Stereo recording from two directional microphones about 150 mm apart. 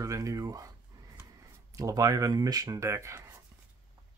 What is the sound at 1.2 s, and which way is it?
Speech, 20° right (ahead or behind).